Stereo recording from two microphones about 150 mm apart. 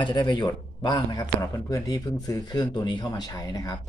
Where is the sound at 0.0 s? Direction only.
30° left (ahead or behind).